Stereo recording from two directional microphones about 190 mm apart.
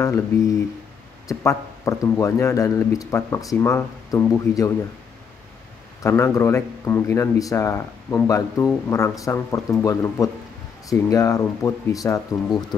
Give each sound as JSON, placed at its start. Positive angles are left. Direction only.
{"t": 0.0, "sound": "speech", "side_deg": 15}
{"t": 6.0, "sound": "speech", "side_deg": 15}